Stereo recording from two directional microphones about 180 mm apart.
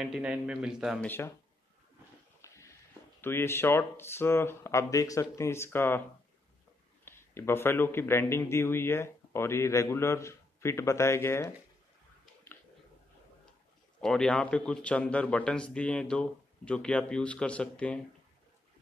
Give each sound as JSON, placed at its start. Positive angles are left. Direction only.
{"t": 0.0, "sound": "a man's voice", "side_deg": -5}
{"t": 1.0, "sound": "speech", "side_deg": 10}
{"t": 2.4, "sound": "a sound", "side_deg": 15}
{"t": 3.2, "sound": "speech", "side_deg": 15}
{"t": 7.1, "sound": "speech", "side_deg": 15}
{"t": 14.0, "sound": "a man's voice", "side_deg": 5}